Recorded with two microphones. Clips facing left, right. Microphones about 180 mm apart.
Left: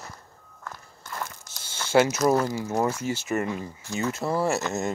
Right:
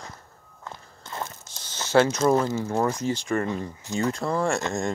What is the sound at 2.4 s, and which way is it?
Speech, 25° right (ahead or behind).